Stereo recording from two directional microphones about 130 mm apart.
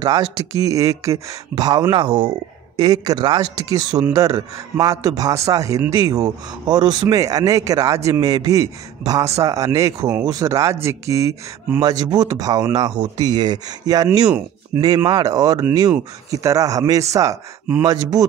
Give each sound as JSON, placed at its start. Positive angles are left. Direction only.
{"t": 0.0, "sound": "speech", "side_deg": -30}
{"t": 14.7, "sound": "speech", "side_deg": -20}
{"t": 15.0, "sound": "speech", "side_deg": -30}